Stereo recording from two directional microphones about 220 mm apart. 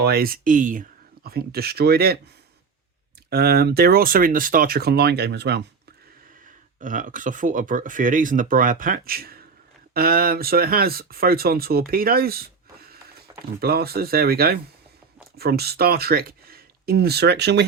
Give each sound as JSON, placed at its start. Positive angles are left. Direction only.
{"t": 0.0, "sound": "speech", "side_deg": -45}
{"t": 3.2, "sound": "speech", "side_deg": -45}
{"t": 6.7, "sound": "speech", "side_deg": -35}
{"t": 13.6, "sound": "speech", "side_deg": -45}